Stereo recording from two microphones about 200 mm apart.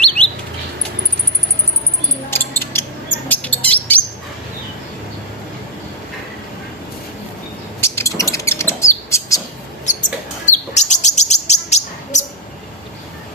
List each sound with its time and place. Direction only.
0.0 s bird: 5° left (ahead or behind)
2.3 s a sound: 10° left (ahead or behind)
3.2 s bird: 10° left (ahead or behind)
7.8 s bird: 15° left (ahead or behind)
9.8 s bird: 40° left (ahead or behind)